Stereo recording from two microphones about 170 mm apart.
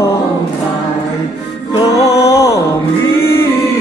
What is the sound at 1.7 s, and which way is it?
Music, 25° left (ahead or behind).